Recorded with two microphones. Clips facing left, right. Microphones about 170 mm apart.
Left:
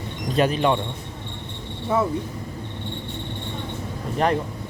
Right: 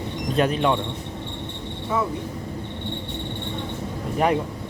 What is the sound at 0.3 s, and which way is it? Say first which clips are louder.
Speech: left 1 dB; centre (ahead or behind).